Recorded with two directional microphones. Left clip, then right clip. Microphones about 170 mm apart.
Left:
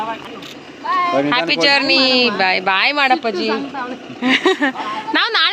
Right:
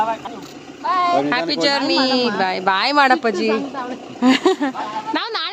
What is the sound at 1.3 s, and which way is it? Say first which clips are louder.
A woman's voice: left 4 dB; 20° right (ahead or behind).